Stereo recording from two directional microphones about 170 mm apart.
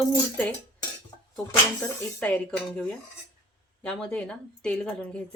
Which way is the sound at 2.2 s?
10° left (ahead or behind).